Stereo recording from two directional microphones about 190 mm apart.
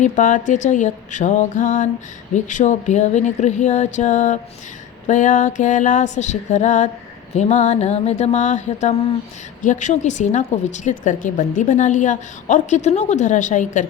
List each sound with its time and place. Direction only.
0.0 s a woman's voice: 40° left (ahead or behind)